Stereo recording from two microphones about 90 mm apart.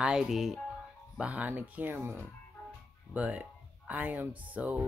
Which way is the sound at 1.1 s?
15° right (ahead or behind).